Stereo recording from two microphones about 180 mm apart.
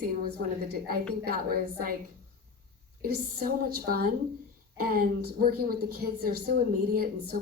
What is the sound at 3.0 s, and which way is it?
A woman's voice, 55° right (ahead or behind).